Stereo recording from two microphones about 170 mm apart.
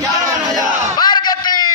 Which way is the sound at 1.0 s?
25° left (ahead or behind).